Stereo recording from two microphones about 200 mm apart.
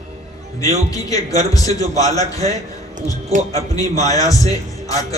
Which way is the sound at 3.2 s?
30° right (ahead or behind).